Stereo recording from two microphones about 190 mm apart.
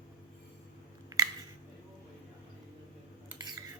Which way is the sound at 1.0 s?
20° right (ahead or behind).